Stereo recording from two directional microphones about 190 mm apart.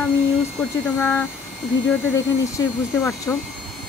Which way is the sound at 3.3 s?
15° left (ahead or behind).